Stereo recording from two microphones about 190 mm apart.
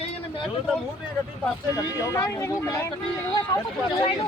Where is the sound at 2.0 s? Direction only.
15° left (ahead or behind).